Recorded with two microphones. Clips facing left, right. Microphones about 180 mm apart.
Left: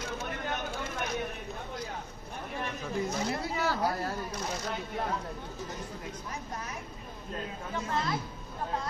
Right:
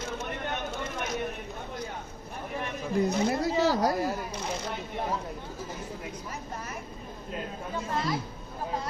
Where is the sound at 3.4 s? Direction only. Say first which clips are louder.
Right 6 dB; 40° right (ahead or behind).